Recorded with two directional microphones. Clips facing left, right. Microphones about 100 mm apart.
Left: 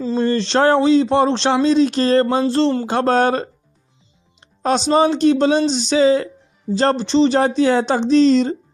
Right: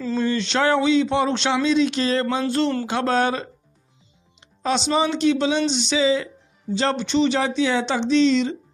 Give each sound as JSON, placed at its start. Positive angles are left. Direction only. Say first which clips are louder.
{"t": 0.2, "sound": "speech", "louder": "left 6 dB", "side_deg": 35}